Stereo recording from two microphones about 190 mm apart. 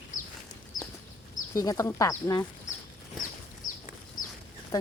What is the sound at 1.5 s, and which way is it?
Speech, 15° left (ahead or behind).